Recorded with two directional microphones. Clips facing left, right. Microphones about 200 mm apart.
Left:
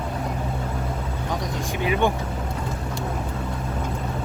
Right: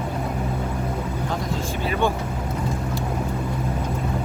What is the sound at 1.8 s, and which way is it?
Speech, 15° left (ahead or behind).